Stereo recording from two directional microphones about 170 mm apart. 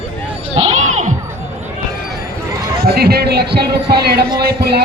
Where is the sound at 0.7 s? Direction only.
45° right (ahead or behind).